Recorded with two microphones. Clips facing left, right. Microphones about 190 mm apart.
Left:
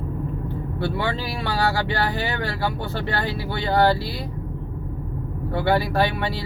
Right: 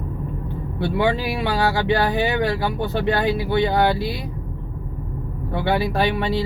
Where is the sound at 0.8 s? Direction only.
15° right (ahead or behind).